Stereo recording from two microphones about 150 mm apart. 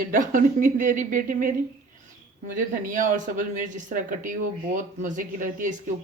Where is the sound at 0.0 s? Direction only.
65° right (ahead or behind).